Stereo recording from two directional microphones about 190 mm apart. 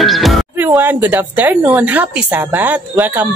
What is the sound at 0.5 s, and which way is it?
A woman's voice, 10° right (ahead or behind).